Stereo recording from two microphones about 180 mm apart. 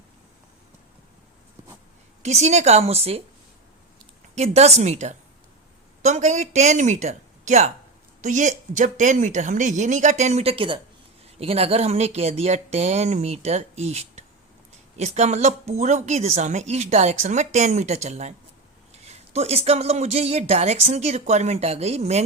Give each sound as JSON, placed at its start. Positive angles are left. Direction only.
{"t": 2.2, "sound": "speech", "side_deg": -40}
{"t": 4.4, "sound": "speech", "side_deg": -35}